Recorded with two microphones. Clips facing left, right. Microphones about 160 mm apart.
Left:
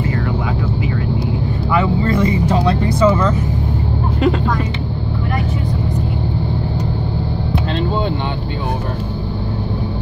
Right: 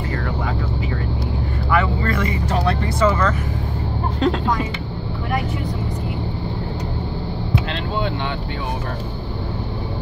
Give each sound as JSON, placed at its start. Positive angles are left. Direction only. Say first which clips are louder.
{"t": 1.7, "sound": "vehicle", "louder": "left 4 dB", "side_deg": 20}
{"t": 4.2, "sound": "speech", "louder": "left 3 dB", "side_deg": 5}